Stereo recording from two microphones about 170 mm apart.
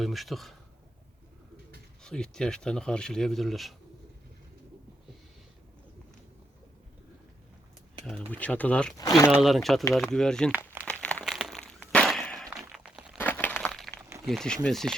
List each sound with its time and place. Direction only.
0.0 s speech: centre (ahead or behind)
2.0 s speech: 5° left (ahead or behind)
8.0 s speech: 10° left (ahead or behind)
9.0 s speech: 20° left (ahead or behind)
9.3 s speech: centre (ahead or behind)
10.8 s a sound: 5° left (ahead or behind)
13.1 s a sound: 10° left (ahead or behind)
14.3 s speech: 5° left (ahead or behind)